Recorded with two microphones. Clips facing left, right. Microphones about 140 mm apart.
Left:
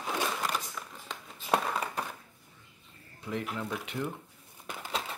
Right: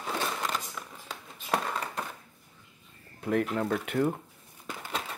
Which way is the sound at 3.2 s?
55° right (ahead or behind).